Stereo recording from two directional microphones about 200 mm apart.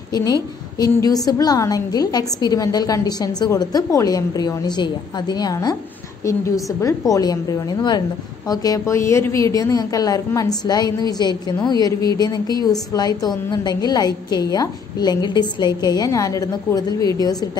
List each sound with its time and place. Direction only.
0.1 s a woman's voice: 20° left (ahead or behind)